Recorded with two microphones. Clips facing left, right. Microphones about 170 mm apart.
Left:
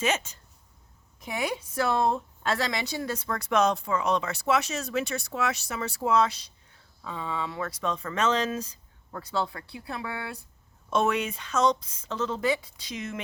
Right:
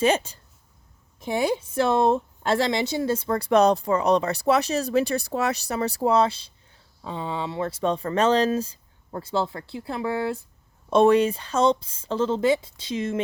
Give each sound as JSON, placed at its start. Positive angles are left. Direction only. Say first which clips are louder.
{"t": 0.0, "sound": "a woman's voice", "louder": "right 7 dB", "side_deg": -30}